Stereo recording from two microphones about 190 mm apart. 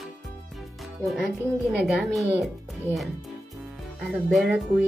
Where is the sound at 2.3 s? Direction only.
Centre (ahead or behind).